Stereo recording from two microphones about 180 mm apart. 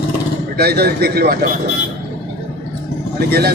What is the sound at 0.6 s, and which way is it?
Speech, 60° right (ahead or behind).